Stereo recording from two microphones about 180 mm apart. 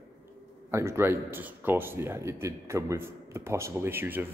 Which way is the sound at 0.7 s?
15° right (ahead or behind).